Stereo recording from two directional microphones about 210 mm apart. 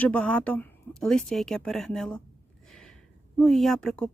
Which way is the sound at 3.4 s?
Centre (ahead or behind).